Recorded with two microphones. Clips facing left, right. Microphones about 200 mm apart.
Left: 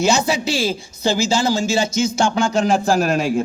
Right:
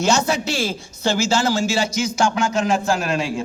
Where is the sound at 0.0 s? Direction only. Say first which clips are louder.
Left 1 dB; 10° left (ahead or behind).